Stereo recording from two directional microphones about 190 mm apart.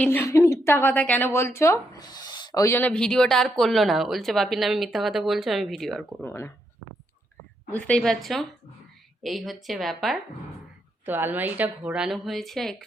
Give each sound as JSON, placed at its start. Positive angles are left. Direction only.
{"t": 0.0, "sound": "speech", "side_deg": 10}
{"t": 6.2, "sound": "speech", "side_deg": 15}
{"t": 7.7, "sound": "a woman's voice", "side_deg": 5}